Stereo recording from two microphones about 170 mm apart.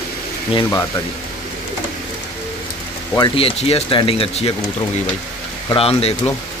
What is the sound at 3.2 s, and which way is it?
Speech, 35° left (ahead or behind).